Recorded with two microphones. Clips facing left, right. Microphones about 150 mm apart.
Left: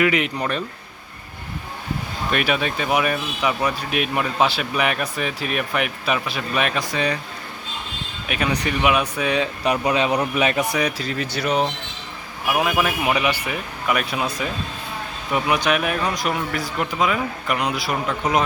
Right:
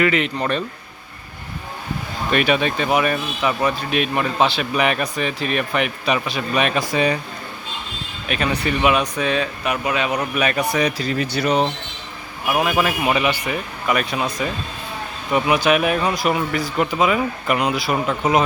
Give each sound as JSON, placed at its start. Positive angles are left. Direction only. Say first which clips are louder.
{"t": 0.0, "sound": "speech", "louder": "right 1 dB", "side_deg": 10}
{"t": 2.3, "sound": "speech", "louder": "right 4 dB", "side_deg": 5}
{"t": 6.9, "sound": "speech", "louder": "right 6 dB", "side_deg": -15}
{"t": 8.3, "sound": "speech", "louder": "right 2 dB", "side_deg": 10}
{"t": 9.6, "sound": "speech", "louder": "left 4 dB", "side_deg": 30}
{"t": 10.2, "sound": "a man's voice", "louder": "even", "side_deg": 20}
{"t": 10.7, "sound": "speech", "louder": "right 3 dB", "side_deg": 5}
{"t": 15.3, "sound": "speech", "louder": "right 3 dB", "side_deg": -5}